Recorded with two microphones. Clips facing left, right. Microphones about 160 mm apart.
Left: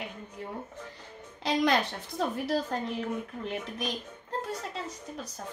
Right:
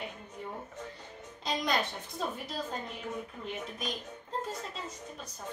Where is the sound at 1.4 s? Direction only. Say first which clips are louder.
Left 6 dB; 75° left (ahead or behind).